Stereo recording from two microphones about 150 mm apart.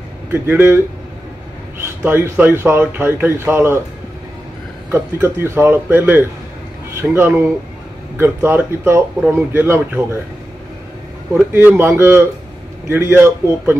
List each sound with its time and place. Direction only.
0.3 s speech: 15° right (ahead or behind)
4.9 s speech: 15° right (ahead or behind)
11.3 s speech: 15° right (ahead or behind)